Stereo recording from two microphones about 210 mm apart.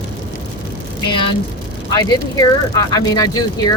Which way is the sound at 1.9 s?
20° left (ahead or behind).